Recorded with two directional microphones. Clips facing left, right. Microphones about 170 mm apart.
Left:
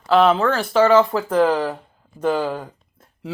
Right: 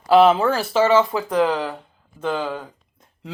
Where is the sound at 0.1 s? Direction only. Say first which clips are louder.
Right 1 dB; 10° right (ahead or behind); by 2.6 s 10° left (ahead or behind).